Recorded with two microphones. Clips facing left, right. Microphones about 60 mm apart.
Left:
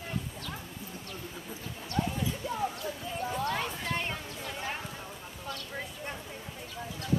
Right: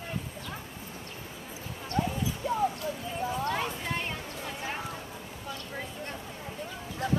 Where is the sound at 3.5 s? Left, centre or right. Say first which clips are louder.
Right 1 dB; centre.